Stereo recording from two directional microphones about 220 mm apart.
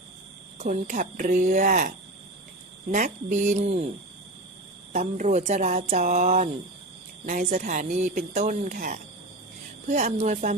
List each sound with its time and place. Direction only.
0.6 s speech: 35° right (ahead or behind)
2.9 s speech: 35° right (ahead or behind)
4.9 s speech: 35° right (ahead or behind)